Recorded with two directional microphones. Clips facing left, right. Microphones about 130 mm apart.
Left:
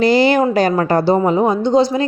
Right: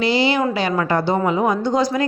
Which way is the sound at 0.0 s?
45° left (ahead or behind).